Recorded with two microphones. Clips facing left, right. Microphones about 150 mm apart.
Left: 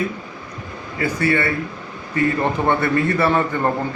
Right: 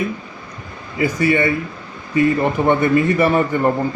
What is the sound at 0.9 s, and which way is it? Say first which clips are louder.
A man's voice: right 3 dB; 15° right (ahead or behind).